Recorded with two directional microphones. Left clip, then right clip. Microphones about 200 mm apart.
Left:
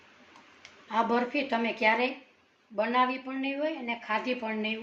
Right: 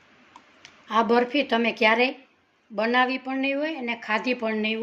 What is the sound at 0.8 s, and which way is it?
Speech, 55° right (ahead or behind).